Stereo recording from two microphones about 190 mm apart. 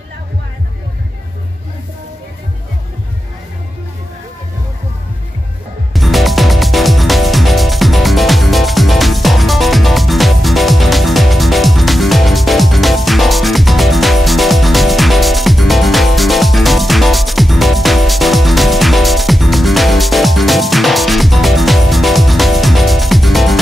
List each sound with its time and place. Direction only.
5.9 s music: centre (ahead or behind)